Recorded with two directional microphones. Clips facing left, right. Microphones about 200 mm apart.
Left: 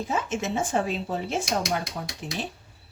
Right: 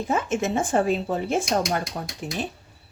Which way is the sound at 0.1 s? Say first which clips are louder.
Right 5 dB; 50° right (ahead or behind).